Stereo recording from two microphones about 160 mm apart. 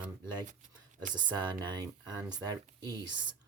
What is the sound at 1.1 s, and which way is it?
Speech, 30° right (ahead or behind).